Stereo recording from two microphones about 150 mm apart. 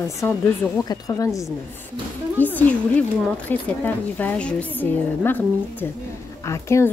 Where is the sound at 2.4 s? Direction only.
10° left (ahead or behind).